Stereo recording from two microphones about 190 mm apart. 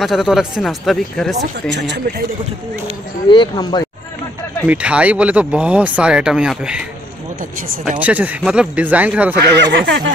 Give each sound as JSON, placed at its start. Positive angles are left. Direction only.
{"t": 0.0, "sound": "speech", "side_deg": 0}
{"t": 1.7, "sound": "speech", "side_deg": -65}
{"t": 3.3, "sound": "a man's voice", "side_deg": 25}
{"t": 4.6, "sound": "speech", "side_deg": -5}
{"t": 8.0, "sound": "speech", "side_deg": -10}
{"t": 9.6, "sound": "speech", "side_deg": -70}